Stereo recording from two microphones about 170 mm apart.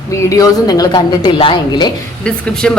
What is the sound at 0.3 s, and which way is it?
A woman's voice, 20° left (ahead or behind).